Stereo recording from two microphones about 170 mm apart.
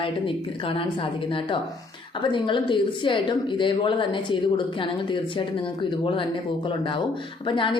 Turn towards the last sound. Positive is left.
turn(degrees=30)  # may be behind; listen again after turning